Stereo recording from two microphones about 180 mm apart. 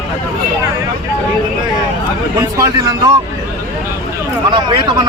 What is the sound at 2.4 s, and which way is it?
Speech, 20° right (ahead or behind).